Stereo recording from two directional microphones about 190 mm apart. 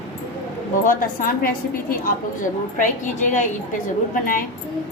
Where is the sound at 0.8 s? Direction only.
50° left (ahead or behind).